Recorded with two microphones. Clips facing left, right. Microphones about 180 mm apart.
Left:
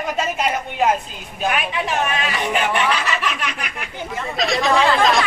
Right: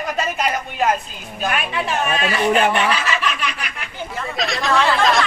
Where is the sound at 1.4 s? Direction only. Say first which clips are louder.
Left 1 dB; 15° left (ahead or behind).